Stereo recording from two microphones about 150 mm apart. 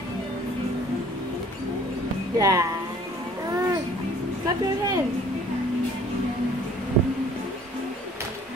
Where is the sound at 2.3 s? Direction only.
20° right (ahead or behind).